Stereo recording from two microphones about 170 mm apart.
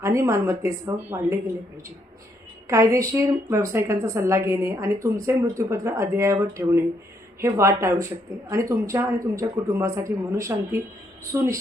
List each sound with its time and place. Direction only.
0.0 s a woman's voice: 20° right (ahead or behind)
2.9 s a woman's voice: 15° right (ahead or behind)